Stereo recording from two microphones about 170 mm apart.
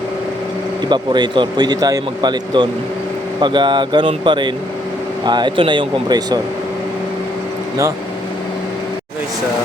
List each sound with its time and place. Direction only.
0.9 s speech: 25° right (ahead or behind)